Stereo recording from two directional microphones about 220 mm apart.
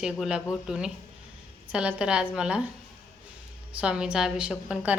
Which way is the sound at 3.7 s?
5° right (ahead or behind).